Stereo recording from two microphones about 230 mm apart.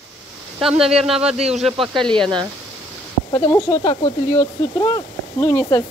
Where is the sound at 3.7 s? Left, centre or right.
Left.